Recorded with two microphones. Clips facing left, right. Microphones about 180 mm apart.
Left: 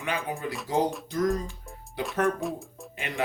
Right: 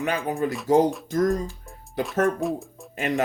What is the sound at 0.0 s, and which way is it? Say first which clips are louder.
Speech: right 6 dB; 45° right (ahead or behind).